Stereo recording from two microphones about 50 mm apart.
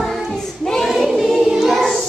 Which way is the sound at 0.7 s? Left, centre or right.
Centre.